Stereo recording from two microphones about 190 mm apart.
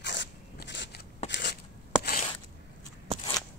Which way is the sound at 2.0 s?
50° left (ahead or behind).